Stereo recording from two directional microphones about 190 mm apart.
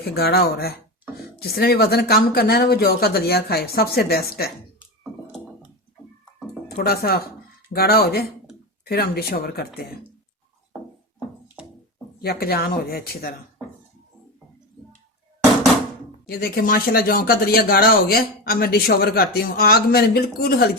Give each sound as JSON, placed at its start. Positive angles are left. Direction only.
{"t": 0.0, "sound": "speech", "side_deg": 55}
{"t": 6.7, "sound": "speech", "side_deg": 55}
{"t": 11.6, "sound": "a sound", "side_deg": -5}
{"t": 12.2, "sound": "speech", "side_deg": 55}
{"t": 16.4, "sound": "speech", "side_deg": 50}